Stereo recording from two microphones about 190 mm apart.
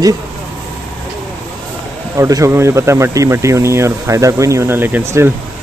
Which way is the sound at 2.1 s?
15° right (ahead or behind).